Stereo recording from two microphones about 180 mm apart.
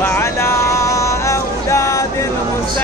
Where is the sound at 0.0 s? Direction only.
15° left (ahead or behind).